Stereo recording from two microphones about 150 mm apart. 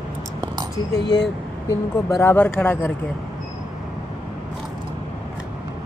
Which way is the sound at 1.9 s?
20° left (ahead or behind).